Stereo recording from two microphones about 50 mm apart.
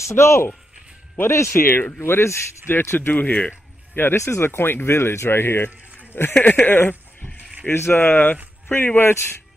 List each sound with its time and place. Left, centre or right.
0.0 s speech: left
3.1 s speech: left
3.9 s speech: left
4.2 s speech: left
6.3 s speech: left
6.6 s speech: left
7.7 s speech: left